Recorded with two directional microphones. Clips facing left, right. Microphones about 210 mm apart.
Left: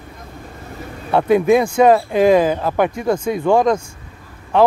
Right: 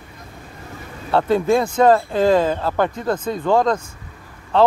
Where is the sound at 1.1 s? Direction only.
15° left (ahead or behind).